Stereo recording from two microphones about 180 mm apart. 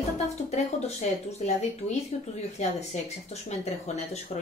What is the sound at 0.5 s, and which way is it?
A woman's voice, 40° left (ahead or behind).